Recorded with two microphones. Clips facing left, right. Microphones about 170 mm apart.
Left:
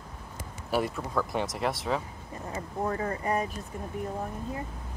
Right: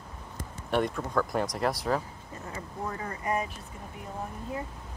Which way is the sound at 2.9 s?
40° left (ahead or behind).